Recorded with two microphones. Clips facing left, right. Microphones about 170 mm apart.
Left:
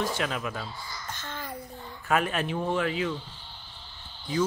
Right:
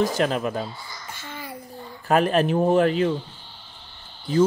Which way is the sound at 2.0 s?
35° right (ahead or behind).